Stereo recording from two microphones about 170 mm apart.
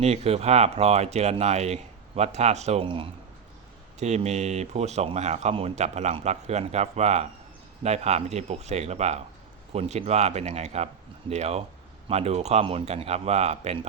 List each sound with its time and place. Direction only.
0.0 s speech: 40° right (ahead or behind)